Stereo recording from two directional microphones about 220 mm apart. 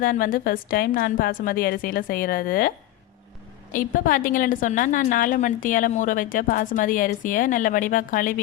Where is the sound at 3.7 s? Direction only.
40° left (ahead or behind).